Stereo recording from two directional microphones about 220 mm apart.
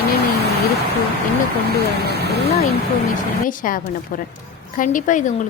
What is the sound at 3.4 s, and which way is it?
Speech, 40° left (ahead or behind).